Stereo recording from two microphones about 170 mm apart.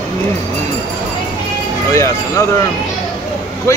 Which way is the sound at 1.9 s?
20° left (ahead or behind).